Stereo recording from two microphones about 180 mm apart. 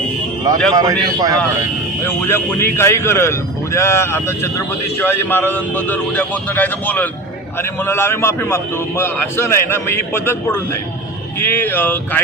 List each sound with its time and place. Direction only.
0.7 s a man's voice: 20° right (ahead or behind)
2.0 s speech: 10° left (ahead or behind)